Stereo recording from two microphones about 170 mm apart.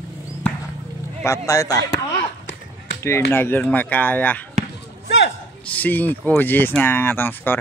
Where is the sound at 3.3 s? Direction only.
10° left (ahead or behind).